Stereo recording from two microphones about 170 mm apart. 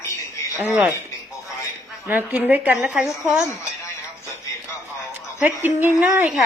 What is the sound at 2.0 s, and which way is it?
A woman's voice, 10° right (ahead or behind).